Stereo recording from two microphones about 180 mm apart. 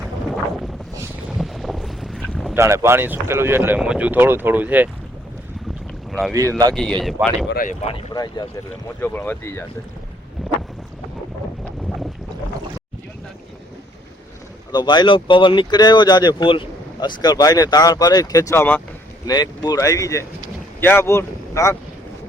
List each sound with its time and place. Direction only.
1.4 s boat: centre (ahead or behind)
2.6 s speech: 15° right (ahead or behind)
6.1 s boat: centre (ahead or behind)
6.7 s speech: 5° left (ahead or behind)
7.5 s speech: 45° left (ahead or behind)
8.1 s speech: 20° left (ahead or behind)
9.0 s speech: 10° left (ahead or behind)
14.7 s speech: 25° left (ahead or behind)
19.3 s speech: 20° left (ahead or behind)